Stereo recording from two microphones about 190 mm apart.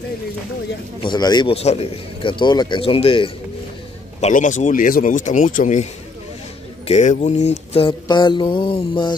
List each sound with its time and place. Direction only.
1.0 s speech: 20° left (ahead or behind)
4.2 s speech: 40° left (ahead or behind)
6.9 s speech: 40° left (ahead or behind)
7.7 s speech: 25° left (ahead or behind)